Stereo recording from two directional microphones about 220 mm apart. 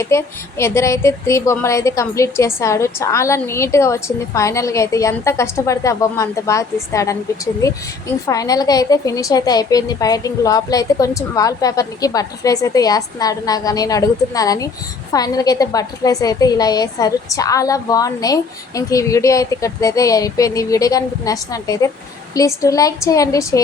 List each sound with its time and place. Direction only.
0.0 s a woman's voice: 10° left (ahead or behind)
8.3 s a woman's voice: 15° left (ahead or behind)